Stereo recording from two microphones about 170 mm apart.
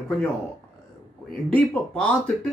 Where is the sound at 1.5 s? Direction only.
5° left (ahead or behind).